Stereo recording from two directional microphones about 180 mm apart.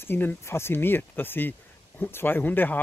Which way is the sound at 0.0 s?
10° left (ahead or behind).